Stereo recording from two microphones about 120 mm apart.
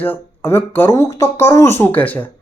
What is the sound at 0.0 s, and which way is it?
A man's voice, 15° left (ahead or behind).